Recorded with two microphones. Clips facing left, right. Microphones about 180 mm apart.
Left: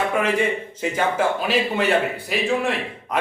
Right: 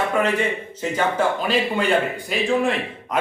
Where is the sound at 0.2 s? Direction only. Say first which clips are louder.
Even; 10° left (ahead or behind).